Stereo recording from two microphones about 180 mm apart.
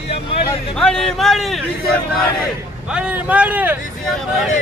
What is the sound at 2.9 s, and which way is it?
Speech, 5° right (ahead or behind).